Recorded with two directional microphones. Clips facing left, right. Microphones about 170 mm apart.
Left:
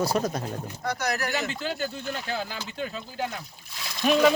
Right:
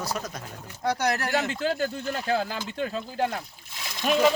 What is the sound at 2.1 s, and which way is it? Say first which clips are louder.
Speech: right 5 dB; 45° right (ahead or behind).